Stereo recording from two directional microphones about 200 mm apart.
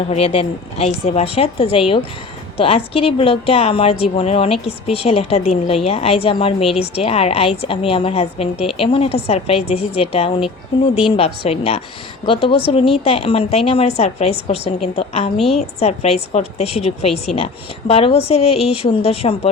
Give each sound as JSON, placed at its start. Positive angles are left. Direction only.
{"t": 0.1, "sound": "a woman's voice", "side_deg": 30}
{"t": 15.4, "sound": "a woman's voice", "side_deg": 0}
{"t": 15.8, "sound": "a woman's voice", "side_deg": 30}